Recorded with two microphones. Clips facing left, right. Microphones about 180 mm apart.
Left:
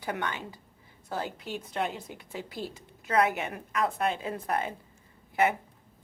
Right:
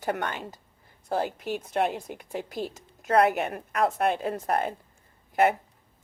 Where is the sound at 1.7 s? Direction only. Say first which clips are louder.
Right 6 dB; 55° right (ahead or behind).